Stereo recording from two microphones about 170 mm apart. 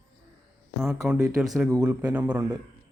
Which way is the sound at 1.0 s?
5° right (ahead or behind).